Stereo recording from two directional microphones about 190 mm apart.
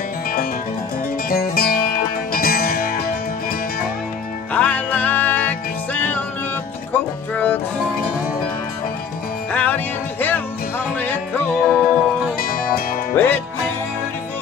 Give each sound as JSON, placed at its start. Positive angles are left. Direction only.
{"t": 1.3, "sound": "music", "side_deg": 50}
{"t": 4.6, "sound": "music", "side_deg": 10}
{"t": 7.3, "sound": "music", "side_deg": 10}
{"t": 9.5, "sound": "music", "side_deg": 10}
{"t": 11.0, "sound": "music", "side_deg": 10}
{"t": 12.4, "sound": "music", "side_deg": 50}
{"t": 13.1, "sound": "music", "side_deg": 10}